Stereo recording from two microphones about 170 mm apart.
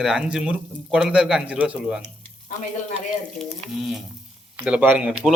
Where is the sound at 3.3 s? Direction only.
Centre (ahead or behind).